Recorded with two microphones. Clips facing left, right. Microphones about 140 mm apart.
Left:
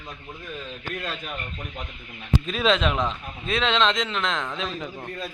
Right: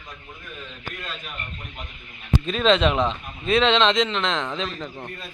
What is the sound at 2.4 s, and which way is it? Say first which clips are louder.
Speech: right 4 dB; centre (ahead or behind).